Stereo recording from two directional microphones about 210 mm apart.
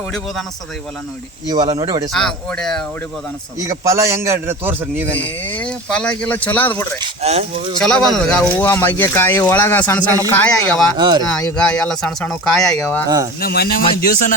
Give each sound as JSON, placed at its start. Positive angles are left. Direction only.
{"t": 1.5, "sound": "speech", "side_deg": -20}
{"t": 2.1, "sound": "speech", "side_deg": 5}
{"t": 3.6, "sound": "a man's voice", "side_deg": -15}
{"t": 5.1, "sound": "speech", "side_deg": 10}
{"t": 7.0, "sound": "speech", "side_deg": -30}
{"t": 7.8, "sound": "speech", "side_deg": 5}
{"t": 10.9, "sound": "speech", "side_deg": -20}
{"t": 11.5, "sound": "speech", "side_deg": 5}
{"t": 13.4, "sound": "speech", "side_deg": 45}